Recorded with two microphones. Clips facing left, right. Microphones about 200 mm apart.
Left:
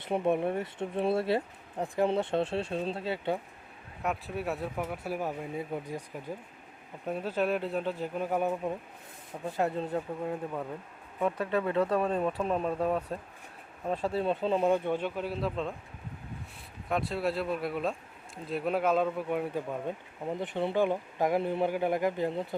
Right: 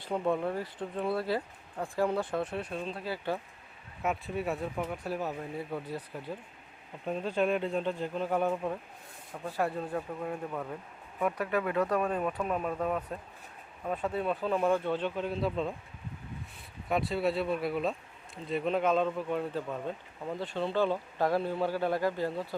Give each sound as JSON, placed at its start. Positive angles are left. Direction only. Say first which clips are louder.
{"t": 0.0, "sound": "speech", "louder": "left 2 dB", "side_deg": 20}
{"t": 4.0, "sound": "speech", "louder": "right 1 dB", "side_deg": 0}
{"t": 9.5, "sound": "speech", "louder": "left 2 dB", "side_deg": 20}
{"t": 16.9, "sound": "speech", "louder": "right 1 dB", "side_deg": 0}